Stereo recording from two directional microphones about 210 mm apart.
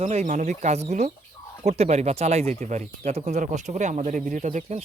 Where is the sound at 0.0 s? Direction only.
30° right (ahead or behind).